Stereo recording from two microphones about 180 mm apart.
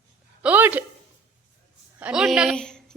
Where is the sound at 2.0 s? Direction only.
5° right (ahead or behind).